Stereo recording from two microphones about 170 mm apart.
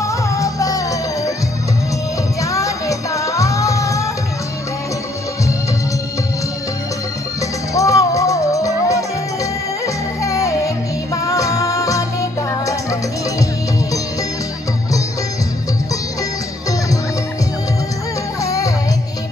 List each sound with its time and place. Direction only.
0.0 s music: 20° left (ahead or behind)
2.4 s music: 20° left (ahead or behind)
7.7 s music: 20° left (ahead or behind)
18.4 s music: 20° left (ahead or behind)